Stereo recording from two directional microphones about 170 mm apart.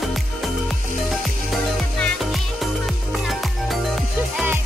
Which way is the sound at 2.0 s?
Centre (ahead or behind).